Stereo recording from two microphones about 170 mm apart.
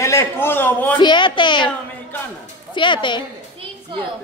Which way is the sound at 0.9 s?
25° left (ahead or behind).